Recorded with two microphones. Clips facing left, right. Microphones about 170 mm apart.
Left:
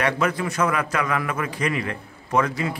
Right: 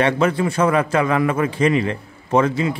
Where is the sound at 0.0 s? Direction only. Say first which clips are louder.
Right 5 dB; 25° right (ahead or behind).